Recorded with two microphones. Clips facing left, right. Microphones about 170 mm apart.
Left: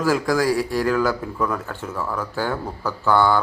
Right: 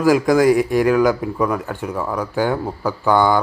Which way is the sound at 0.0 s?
15° right (ahead or behind).